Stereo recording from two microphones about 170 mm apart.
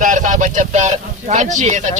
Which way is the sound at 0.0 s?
50° right (ahead or behind).